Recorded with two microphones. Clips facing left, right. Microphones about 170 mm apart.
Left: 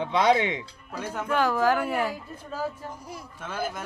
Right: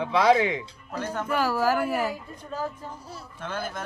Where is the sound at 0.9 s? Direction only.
10° left (ahead or behind).